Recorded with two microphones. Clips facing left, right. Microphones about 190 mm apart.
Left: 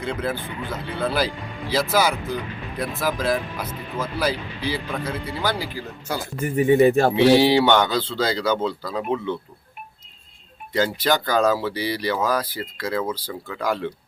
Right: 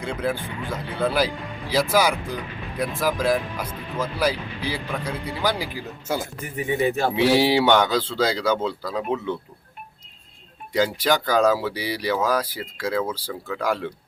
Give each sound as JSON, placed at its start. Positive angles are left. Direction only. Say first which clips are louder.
{"t": 0.0, "sound": "speech", "louder": "even", "side_deg": -10}
{"t": 6.4, "sound": "speech", "louder": "left 10 dB", "side_deg": 50}
{"t": 7.2, "sound": "speech", "louder": "left 1 dB", "side_deg": -10}
{"t": 10.7, "sound": "speech", "louder": "even", "side_deg": -10}